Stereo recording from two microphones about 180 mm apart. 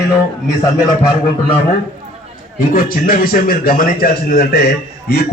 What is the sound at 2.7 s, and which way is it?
A man's voice, 50° left (ahead or behind).